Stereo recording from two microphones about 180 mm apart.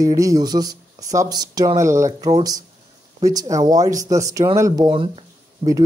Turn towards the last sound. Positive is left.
turn(degrees=-25)  # may be behind; listen again after turning